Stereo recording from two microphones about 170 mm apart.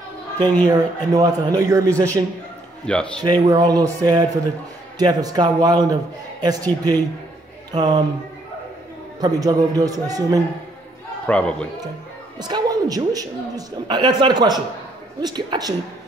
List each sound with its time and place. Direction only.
0.7 s a woman's voice: 20° right (ahead or behind)
2.9 s a man's voice: 5° left (ahead or behind)
3.3 s a woman's voice: 25° right (ahead or behind)
9.2 s a woman's voice: 25° right (ahead or behind)
11.2 s a man's voice: 5° left (ahead or behind)
12.4 s a woman's voice: 25° right (ahead or behind)